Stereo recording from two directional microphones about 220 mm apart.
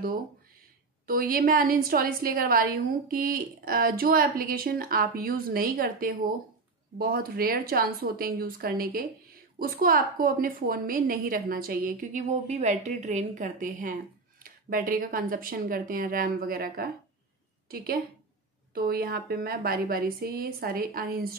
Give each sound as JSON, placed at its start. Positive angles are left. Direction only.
{"t": 1.0, "sound": "a woman's voice", "side_deg": -40}